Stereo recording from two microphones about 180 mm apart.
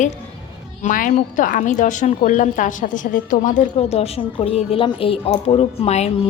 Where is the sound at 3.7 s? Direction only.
35° left (ahead or behind).